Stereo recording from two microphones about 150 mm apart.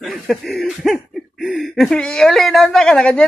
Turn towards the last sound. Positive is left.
turn(degrees=5)  # may be behind; listen again after turning